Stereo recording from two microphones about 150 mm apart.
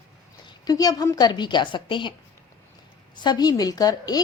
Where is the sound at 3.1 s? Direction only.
30° left (ahead or behind).